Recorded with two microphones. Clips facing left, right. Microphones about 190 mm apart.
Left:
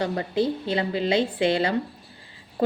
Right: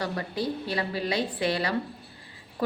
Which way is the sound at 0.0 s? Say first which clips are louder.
Left 6 dB; 25° left (ahead or behind).